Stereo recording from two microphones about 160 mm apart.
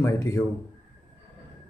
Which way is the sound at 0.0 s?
15° left (ahead or behind).